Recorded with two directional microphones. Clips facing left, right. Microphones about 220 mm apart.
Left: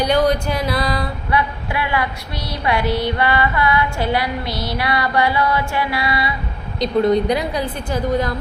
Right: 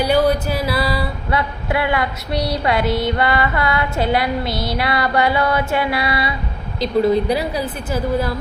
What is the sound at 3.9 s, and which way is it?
Music, 20° right (ahead or behind).